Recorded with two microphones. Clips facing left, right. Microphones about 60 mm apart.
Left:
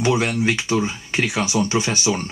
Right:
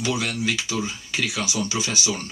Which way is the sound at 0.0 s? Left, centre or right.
Left.